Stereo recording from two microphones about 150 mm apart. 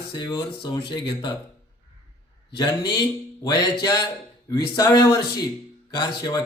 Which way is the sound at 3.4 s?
25° left (ahead or behind).